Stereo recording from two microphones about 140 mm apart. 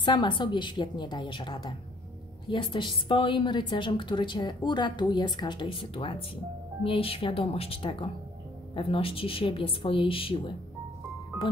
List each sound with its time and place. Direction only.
0.0 s a woman's voice: 35° left (ahead or behind)